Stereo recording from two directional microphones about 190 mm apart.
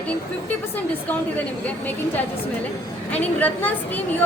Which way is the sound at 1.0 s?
10° left (ahead or behind).